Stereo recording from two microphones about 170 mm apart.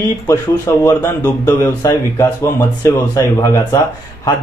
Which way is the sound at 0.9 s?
15° left (ahead or behind).